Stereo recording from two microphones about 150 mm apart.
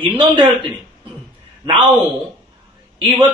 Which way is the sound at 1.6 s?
35° right (ahead or behind).